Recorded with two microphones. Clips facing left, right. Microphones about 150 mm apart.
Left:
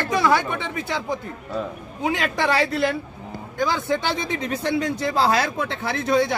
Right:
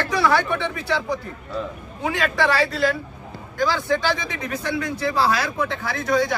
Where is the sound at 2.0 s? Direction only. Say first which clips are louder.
Right 1 dB; 20° left (ahead or behind).